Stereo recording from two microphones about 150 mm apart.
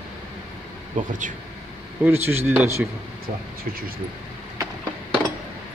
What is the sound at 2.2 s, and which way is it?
Speech, 15° right (ahead or behind).